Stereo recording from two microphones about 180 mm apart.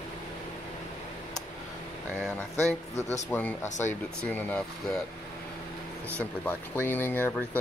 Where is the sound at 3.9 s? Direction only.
10° left (ahead or behind).